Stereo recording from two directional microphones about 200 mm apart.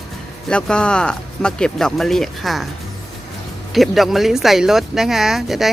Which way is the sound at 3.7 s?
Centre (ahead or behind).